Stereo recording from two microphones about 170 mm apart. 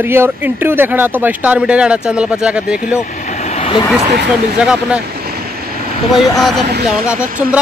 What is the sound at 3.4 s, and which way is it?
Vehicle, 35° left (ahead or behind).